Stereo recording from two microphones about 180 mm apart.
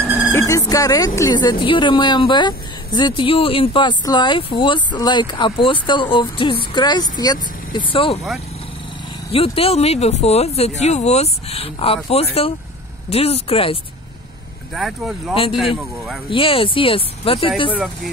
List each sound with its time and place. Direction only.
0.0 s vehicle: 10° right (ahead or behind)
0.3 s speech: 15° left (ahead or behind)
9.3 s speech: 35° left (ahead or behind)
14.7 s speech: centre (ahead or behind)
16.3 s speech: 30° left (ahead or behind)